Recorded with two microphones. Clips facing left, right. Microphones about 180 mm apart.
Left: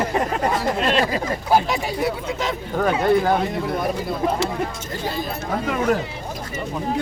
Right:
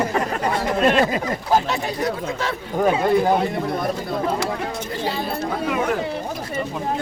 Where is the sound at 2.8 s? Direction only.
15° right (ahead or behind).